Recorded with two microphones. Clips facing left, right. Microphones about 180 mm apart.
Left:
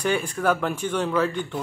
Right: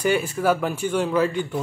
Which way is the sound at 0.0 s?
10° right (ahead or behind).